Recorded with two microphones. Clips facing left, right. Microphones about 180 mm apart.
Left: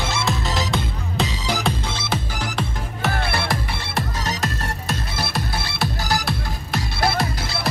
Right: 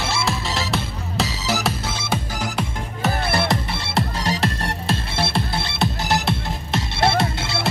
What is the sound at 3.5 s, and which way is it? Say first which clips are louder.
Music: right 2 dB; 30° right (ahead or behind).